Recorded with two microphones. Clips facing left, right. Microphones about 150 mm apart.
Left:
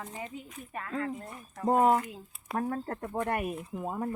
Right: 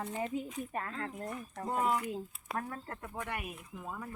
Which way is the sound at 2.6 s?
35° left (ahead or behind).